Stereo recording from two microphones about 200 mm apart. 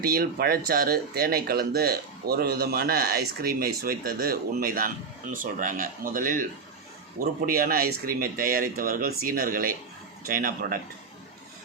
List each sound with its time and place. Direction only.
0.0 s speech: 50° right (ahead or behind)